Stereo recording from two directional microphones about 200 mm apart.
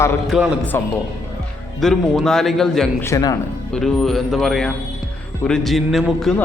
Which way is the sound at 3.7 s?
Centre (ahead or behind).